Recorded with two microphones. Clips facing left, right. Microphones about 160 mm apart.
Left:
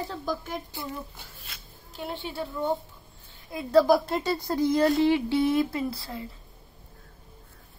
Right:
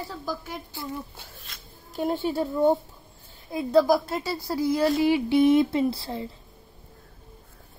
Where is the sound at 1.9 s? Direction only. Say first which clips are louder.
Right 9 dB; 45° right (ahead or behind).